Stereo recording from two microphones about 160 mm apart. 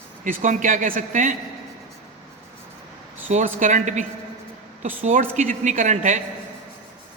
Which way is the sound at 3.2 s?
55° right (ahead or behind).